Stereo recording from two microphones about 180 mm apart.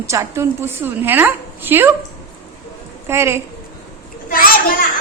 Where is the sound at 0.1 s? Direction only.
15° right (ahead or behind).